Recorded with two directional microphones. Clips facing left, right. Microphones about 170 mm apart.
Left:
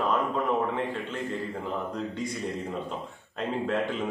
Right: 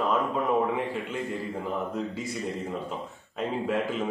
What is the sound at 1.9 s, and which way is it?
Speech, 5° right (ahead or behind).